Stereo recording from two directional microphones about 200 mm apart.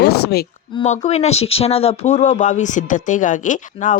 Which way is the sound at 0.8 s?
35° left (ahead or behind).